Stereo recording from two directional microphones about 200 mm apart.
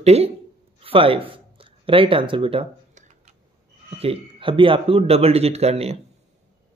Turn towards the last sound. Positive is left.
turn(degrees=-30)  # may be behind; listen again after turning